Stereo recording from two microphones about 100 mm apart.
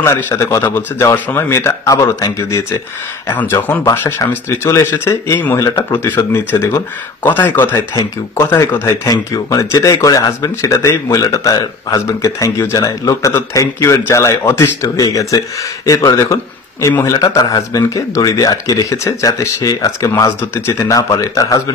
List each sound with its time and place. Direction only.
0.0 s a man's voice: 30° left (ahead or behind)
3.3 s a man's voice: 20° left (ahead or behind); by 21.7 s 35° left (ahead or behind)